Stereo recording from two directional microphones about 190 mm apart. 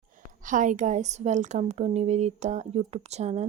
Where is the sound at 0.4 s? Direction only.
45° right (ahead or behind).